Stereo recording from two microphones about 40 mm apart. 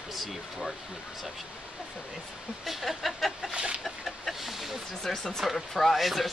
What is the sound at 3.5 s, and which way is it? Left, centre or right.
Chicken, right.